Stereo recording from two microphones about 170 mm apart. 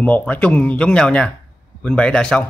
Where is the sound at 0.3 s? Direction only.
10° left (ahead or behind).